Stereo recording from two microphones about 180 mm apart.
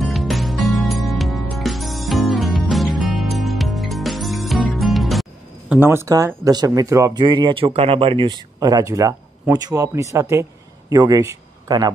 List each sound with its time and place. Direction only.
0.0 s music: centre (ahead or behind)
5.8 s speech: 15° right (ahead or behind)